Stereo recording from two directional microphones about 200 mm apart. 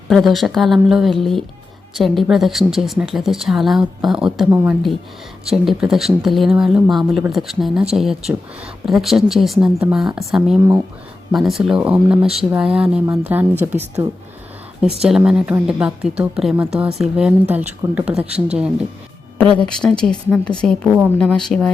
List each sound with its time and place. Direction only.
0.1 s speech: centre (ahead or behind)
4.4 s a woman's voice: 10° right (ahead or behind)
5.5 s speech: centre (ahead or behind)
10.6 s a woman's voice: 15° right (ahead or behind)
11.3 s a woman's voice: centre (ahead or behind)
15.0 s speech: 5° right (ahead or behind)